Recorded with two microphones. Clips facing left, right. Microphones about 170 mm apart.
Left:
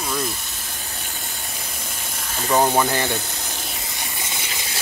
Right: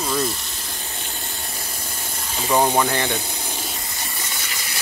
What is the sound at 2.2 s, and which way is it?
Speech, 10° right (ahead or behind).